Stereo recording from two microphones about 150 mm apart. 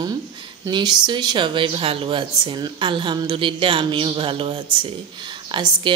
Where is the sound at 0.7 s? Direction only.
30° right (ahead or behind).